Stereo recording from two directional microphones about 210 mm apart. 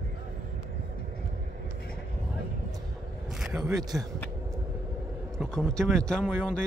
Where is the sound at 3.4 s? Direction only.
5° right (ahead or behind).